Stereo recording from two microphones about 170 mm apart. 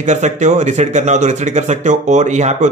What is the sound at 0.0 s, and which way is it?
Speech, 45° right (ahead or behind).